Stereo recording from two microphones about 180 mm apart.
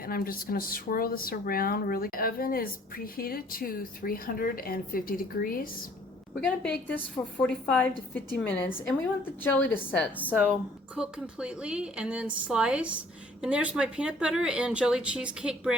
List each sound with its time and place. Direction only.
0.0 s speech: 55° left (ahead or behind)
6.4 s a woman's voice: 5° left (ahead or behind)
10.9 s speech: 5° right (ahead or behind)